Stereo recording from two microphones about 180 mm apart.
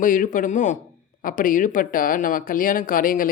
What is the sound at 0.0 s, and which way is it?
Speech, 45° left (ahead or behind).